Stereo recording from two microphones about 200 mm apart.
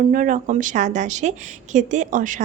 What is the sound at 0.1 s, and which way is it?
A woman's voice, 40° right (ahead or behind).